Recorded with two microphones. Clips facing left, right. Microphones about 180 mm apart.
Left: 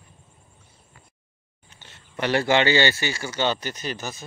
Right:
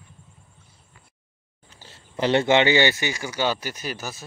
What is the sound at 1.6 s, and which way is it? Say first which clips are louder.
Speech: right 2 dB; 35° right (ahead or behind).